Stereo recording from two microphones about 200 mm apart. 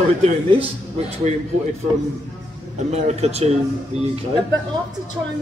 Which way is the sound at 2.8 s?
35° right (ahead or behind).